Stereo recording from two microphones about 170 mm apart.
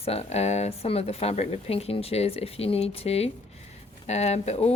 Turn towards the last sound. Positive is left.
turn(degrees=40)  # may be behind; listen again after turning